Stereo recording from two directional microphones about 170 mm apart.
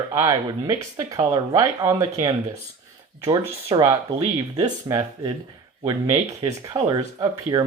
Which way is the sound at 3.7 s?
20° right (ahead or behind).